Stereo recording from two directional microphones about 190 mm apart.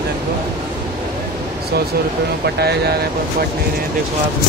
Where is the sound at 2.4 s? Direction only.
55° right (ahead or behind).